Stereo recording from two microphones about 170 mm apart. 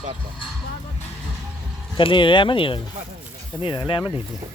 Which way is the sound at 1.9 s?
30° left (ahead or behind).